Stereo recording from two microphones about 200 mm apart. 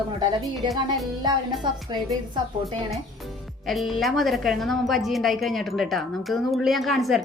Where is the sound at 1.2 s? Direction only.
20° right (ahead or behind).